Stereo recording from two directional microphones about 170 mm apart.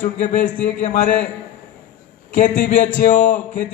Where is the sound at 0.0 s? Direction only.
50° left (ahead or behind).